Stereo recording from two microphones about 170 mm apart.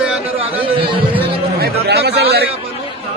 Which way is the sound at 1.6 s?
75° right (ahead or behind).